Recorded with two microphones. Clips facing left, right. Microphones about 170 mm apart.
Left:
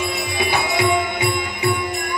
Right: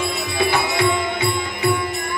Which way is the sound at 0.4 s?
15° left (ahead or behind).